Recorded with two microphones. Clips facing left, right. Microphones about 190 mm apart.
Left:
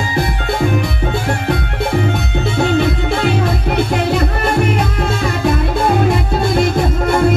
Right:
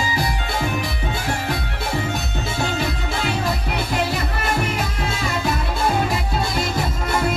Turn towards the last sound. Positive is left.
turn(degrees=55)  # may be behind; listen again after turning